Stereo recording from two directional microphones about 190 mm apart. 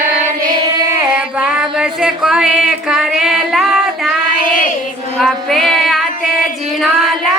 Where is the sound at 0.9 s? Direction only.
5° right (ahead or behind).